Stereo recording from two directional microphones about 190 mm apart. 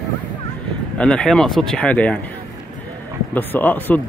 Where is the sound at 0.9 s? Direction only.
5° left (ahead or behind).